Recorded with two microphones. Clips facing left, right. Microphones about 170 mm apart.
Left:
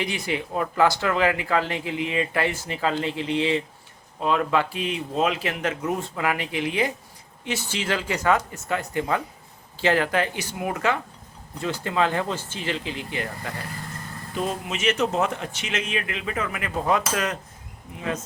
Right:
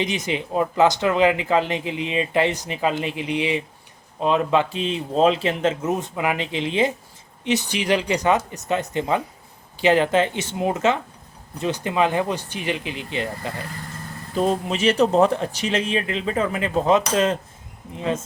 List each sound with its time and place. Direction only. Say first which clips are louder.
0.0 s speech: right 3 dB; 20° right (ahead or behind)
14.3 s speech: right 7 dB; 35° right (ahead or behind)